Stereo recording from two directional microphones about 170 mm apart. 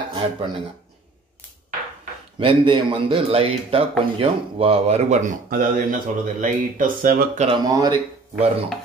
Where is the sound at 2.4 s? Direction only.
30° right (ahead or behind); by 7.5 s 55° right (ahead or behind).